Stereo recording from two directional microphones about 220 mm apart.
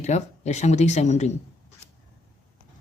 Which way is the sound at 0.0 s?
30° left (ahead or behind).